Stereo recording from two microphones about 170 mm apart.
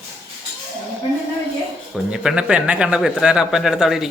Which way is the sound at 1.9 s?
5° right (ahead or behind).